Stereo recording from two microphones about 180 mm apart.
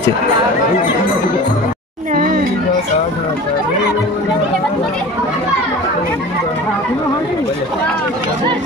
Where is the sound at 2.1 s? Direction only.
50° right (ahead or behind).